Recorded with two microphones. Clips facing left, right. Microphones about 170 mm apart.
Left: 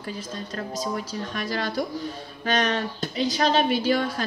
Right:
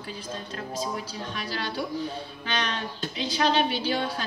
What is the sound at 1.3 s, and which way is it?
Speech, 45° left (ahead or behind).